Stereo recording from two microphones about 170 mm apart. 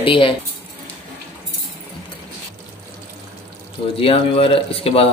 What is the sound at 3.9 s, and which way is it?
Speech, 35° left (ahead or behind).